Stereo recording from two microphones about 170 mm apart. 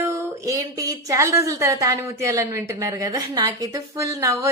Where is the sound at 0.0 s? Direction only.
20° right (ahead or behind).